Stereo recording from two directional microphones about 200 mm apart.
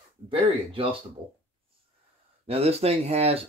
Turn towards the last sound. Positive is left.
turn(degrees=-30)  # may be behind; listen again after turning